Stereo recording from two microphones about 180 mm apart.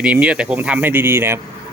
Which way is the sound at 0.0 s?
5° right (ahead or behind).